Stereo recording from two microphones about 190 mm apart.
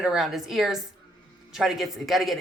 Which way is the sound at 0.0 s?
Centre (ahead or behind).